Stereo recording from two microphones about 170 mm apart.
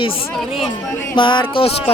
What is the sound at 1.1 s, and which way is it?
Speech, 30° left (ahead or behind).